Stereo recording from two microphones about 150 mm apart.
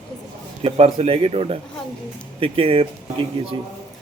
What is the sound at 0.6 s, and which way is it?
Speech, 40° right (ahead or behind).